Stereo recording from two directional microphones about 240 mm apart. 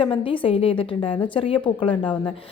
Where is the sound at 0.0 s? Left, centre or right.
Left.